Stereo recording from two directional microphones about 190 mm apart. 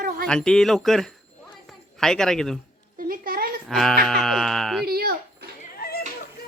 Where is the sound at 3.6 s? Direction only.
Centre (ahead or behind).